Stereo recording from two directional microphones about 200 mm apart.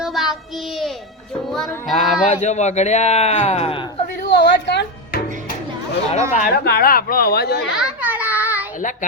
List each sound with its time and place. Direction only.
0.0 s child singing: centre (ahead or behind)
1.5 s music: centre (ahead or behind)
2.3 s speech: 35° left (ahead or behind)
4.2 s speech: 55° left (ahead or behind)
6.3 s a woman's voice: 45° left (ahead or behind)
7.8 s child singing: 10° right (ahead or behind)
8.8 s speech: 40° left (ahead or behind)